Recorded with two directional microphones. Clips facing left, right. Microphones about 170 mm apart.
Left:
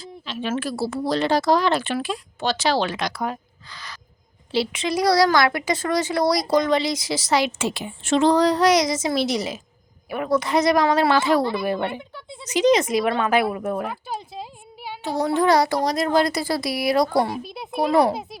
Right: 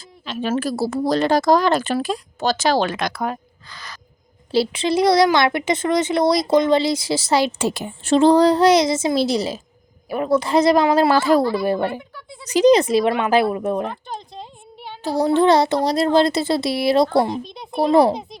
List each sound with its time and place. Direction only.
0.0 s speech: 45° right (ahead or behind)
4.5 s speech: 35° right (ahead or behind)
12.1 s a sound: 25° left (ahead or behind)
12.5 s speech: 35° right (ahead or behind); by 13.7 s 20° right (ahead or behind)
13.8 s speech: 5° left (ahead or behind)
15.0 s speech: 35° right (ahead or behind)
17.4 s a child's voice: 5° left (ahead or behind)
17.7 s speech: 30° right (ahead or behind)
18.1 s a child's voice: 5° left (ahead or behind)